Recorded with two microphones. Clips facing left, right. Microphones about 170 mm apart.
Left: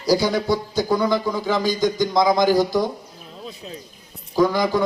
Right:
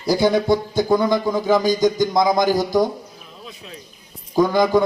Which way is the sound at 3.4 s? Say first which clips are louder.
Left 4 dB; 35° left (ahead or behind).